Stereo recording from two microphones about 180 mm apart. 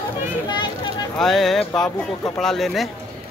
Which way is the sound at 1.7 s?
20° left (ahead or behind).